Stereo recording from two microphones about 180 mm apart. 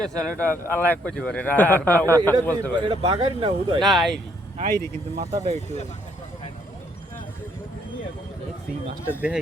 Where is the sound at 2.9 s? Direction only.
25° right (ahead or behind).